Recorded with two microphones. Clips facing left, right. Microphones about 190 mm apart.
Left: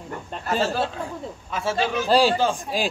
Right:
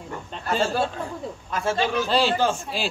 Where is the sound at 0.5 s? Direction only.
Centre (ahead or behind).